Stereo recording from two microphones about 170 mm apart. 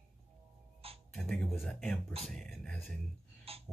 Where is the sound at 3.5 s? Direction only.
35° right (ahead or behind).